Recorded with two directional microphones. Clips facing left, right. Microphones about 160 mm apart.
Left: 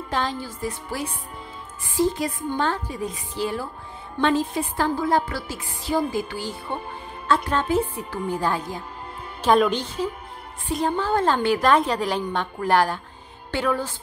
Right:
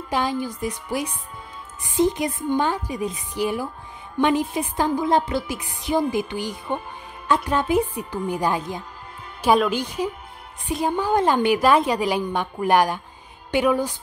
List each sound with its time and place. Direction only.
0.1 s a woman's voice: 10° right (ahead or behind)